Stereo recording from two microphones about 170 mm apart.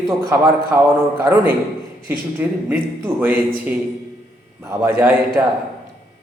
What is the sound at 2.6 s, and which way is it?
A man's voice, 10° right (ahead or behind).